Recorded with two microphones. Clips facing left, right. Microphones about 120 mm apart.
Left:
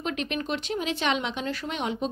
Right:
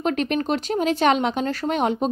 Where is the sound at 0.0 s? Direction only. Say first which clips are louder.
Right 8 dB; 45° right (ahead or behind).